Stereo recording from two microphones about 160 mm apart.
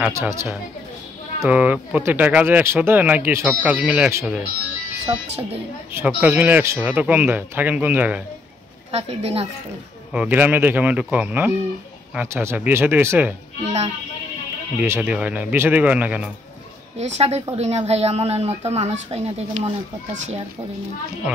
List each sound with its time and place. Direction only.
0.0 s speech: 15° right (ahead or behind)
5.9 s speech: 10° right (ahead or behind)
8.9 s a woman's voice: 40° right (ahead or behind)
10.1 s speech: 10° right (ahead or behind)
14.8 s speech: 10° right (ahead or behind)
17.0 s a woman's voice: 40° right (ahead or behind)